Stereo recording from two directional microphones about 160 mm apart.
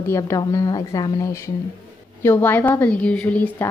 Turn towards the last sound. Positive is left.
turn(degrees=10)  # may be behind; listen again after turning